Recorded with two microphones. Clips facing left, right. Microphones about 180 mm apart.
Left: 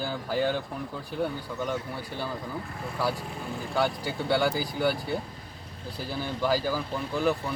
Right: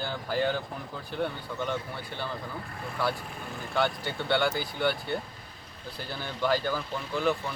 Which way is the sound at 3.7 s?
5° left (ahead or behind).